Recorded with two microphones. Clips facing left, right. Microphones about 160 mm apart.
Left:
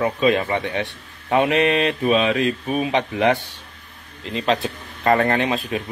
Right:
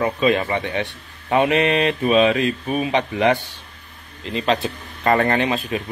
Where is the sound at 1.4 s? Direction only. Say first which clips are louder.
Right 1 dB; 45° right (ahead or behind).